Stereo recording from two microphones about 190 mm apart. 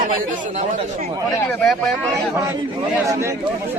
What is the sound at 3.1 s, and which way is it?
Speech, 15° right (ahead or behind).